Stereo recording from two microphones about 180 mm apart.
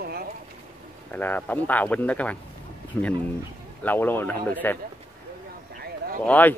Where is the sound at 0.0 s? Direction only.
55° right (ahead or behind).